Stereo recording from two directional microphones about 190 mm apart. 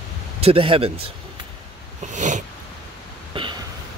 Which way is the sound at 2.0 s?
40° right (ahead or behind).